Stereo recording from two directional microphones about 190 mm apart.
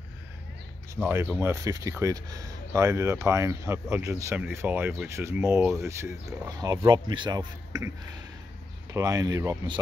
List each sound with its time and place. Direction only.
0.9 s speech: 10° right (ahead or behind)
8.9 s speech: 20° right (ahead or behind)